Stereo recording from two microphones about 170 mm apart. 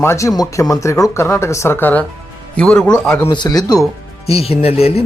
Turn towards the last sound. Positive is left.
turn(degrees=35)  # may be behind; listen again after turning